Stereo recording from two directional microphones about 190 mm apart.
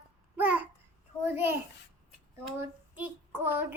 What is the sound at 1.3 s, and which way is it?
Child singing, 10° right (ahead or behind).